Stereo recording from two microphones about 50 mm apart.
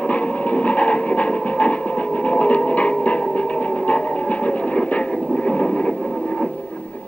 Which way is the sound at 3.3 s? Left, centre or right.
Left.